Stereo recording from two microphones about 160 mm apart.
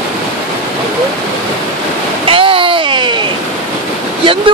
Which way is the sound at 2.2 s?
35° right (ahead or behind).